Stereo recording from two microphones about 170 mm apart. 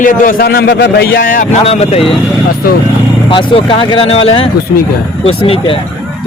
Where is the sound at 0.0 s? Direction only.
55° left (ahead or behind).